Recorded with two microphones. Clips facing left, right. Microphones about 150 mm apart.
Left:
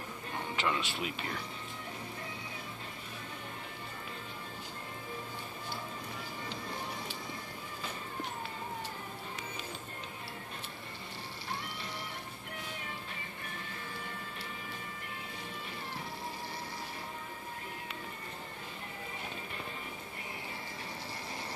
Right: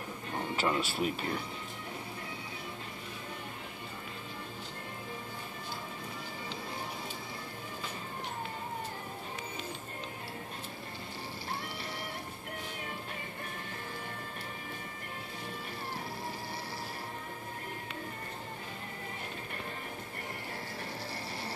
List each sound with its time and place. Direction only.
0.6 s speech: 40° right (ahead or behind)